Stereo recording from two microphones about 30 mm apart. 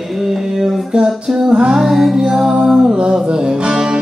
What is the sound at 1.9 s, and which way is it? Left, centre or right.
Music, centre.